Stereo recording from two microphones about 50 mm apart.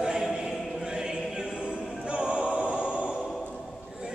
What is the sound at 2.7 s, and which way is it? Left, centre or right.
Music, centre.